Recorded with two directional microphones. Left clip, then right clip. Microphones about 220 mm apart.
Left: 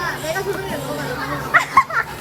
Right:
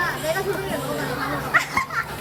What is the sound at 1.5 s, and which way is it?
Children playing, centre (ahead or behind).